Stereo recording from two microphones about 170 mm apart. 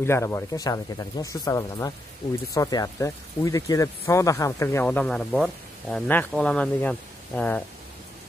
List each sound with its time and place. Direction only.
0.0 s speech: 15° left (ahead or behind)